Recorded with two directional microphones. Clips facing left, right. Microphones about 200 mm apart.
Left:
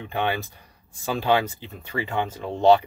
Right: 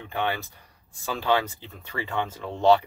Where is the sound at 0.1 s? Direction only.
20° left (ahead or behind).